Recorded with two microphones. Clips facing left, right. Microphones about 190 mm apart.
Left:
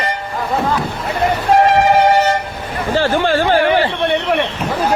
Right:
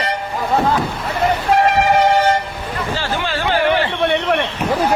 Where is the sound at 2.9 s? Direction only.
55° left (ahead or behind).